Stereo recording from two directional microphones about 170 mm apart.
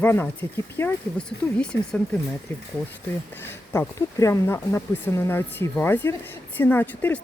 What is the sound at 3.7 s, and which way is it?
Speech, 15° left (ahead or behind).